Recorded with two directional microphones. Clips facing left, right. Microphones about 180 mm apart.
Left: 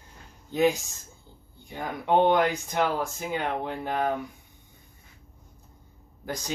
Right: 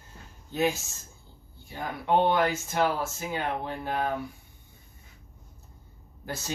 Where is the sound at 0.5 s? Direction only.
15° left (ahead or behind).